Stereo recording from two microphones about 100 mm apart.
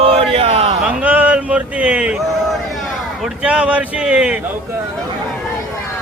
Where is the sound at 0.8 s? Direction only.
10° right (ahead or behind).